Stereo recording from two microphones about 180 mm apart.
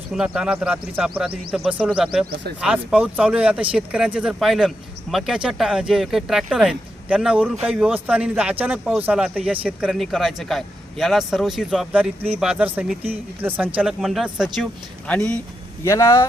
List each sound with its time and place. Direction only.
0.1 s speech: 5° right (ahead or behind); by 16.2 s 15° left (ahead or behind)